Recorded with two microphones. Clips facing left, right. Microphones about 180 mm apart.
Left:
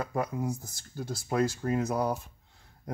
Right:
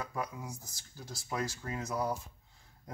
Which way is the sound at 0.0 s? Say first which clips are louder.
Left 8 dB; 55° left (ahead or behind).